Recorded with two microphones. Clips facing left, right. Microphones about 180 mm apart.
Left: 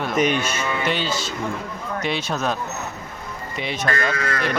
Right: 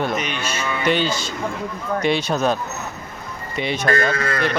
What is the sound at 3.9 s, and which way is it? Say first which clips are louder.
Speech: right 3 dB; 30° right (ahead or behind).